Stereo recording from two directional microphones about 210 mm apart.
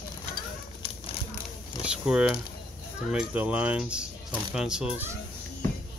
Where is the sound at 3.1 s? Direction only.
5° right (ahead or behind).